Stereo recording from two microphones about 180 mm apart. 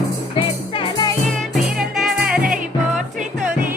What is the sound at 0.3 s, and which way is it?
Music, 30° left (ahead or behind).